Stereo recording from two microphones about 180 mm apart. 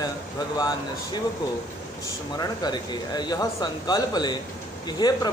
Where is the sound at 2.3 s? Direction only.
20° left (ahead or behind).